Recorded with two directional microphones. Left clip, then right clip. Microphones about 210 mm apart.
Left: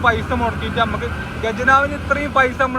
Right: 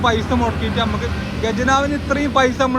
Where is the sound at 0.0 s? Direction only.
15° right (ahead or behind).